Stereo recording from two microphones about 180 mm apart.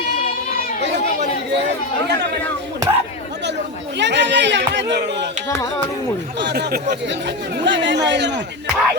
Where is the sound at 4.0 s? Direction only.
75° right (ahead or behind).